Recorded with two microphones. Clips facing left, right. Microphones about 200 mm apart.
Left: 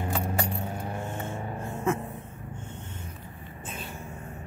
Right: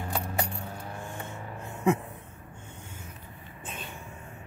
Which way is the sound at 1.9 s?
15° right (ahead or behind).